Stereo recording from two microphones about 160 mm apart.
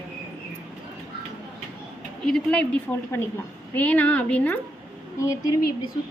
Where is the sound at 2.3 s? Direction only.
5° left (ahead or behind).